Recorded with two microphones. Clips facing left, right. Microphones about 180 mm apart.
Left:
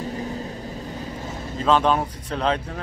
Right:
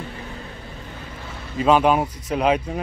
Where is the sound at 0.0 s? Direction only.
40° left (ahead or behind).